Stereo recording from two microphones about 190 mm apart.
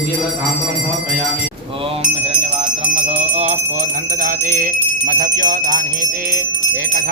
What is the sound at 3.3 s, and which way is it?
Speech, 40° right (ahead or behind).